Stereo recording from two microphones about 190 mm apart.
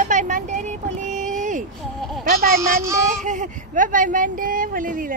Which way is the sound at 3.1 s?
40° right (ahead or behind).